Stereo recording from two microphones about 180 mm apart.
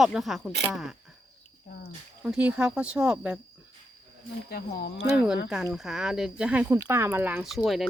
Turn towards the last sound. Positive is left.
turn(degrees=0)  # may be behind; listen again after turning